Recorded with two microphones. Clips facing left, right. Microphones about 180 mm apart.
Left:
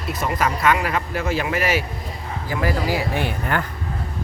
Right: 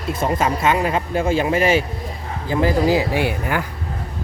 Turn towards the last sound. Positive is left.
turn(degrees=-10)  # may be behind; listen again after turning